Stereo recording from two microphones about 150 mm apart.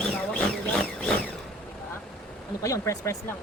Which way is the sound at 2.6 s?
20° left (ahead or behind).